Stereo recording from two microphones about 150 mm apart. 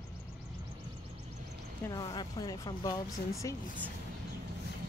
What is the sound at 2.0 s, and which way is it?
Speech, 30° left (ahead or behind).